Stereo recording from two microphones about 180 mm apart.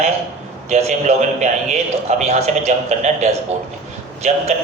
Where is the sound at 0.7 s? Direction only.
40° right (ahead or behind).